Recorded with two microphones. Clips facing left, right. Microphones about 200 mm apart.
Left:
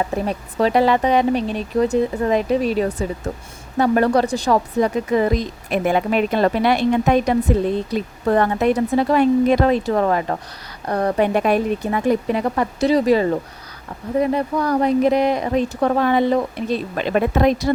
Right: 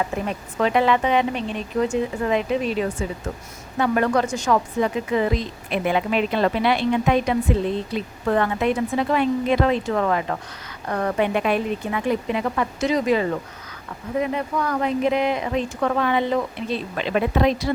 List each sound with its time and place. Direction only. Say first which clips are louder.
0.0 s speech: left 3 dB; 35° left (ahead or behind)